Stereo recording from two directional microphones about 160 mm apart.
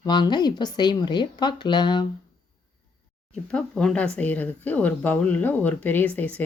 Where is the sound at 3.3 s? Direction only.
5° left (ahead or behind).